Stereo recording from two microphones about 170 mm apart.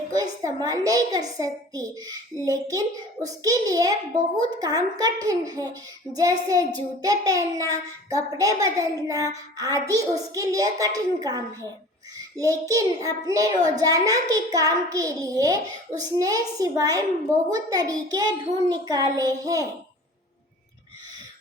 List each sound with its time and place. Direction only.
0.1 s a child's voice: 20° right (ahead or behind)